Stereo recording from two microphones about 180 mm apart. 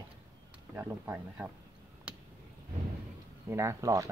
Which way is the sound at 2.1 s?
5° right (ahead or behind).